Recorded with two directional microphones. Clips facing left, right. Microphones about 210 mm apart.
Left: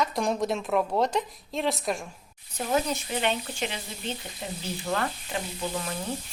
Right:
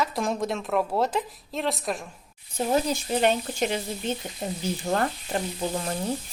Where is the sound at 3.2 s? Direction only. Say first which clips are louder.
Right 6 dB; 45° right (ahead or behind).